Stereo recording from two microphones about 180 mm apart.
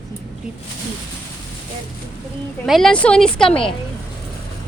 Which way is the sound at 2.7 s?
Centre (ahead or behind).